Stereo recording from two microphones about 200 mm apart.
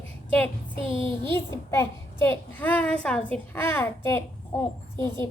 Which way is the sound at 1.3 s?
15° left (ahead or behind).